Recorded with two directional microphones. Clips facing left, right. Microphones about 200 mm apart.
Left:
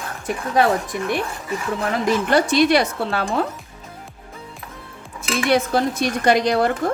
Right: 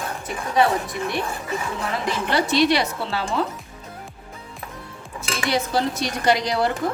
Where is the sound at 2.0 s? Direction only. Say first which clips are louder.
Left 5 dB; 45° left (ahead or behind).